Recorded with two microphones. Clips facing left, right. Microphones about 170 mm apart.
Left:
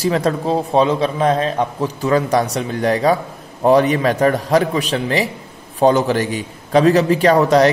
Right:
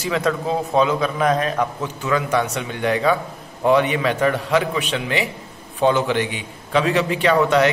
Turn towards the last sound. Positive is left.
turn(degrees=35)  # may be behind; listen again after turning